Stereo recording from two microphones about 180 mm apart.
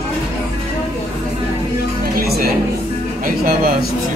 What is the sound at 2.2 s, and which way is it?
Speech, 55° right (ahead or behind).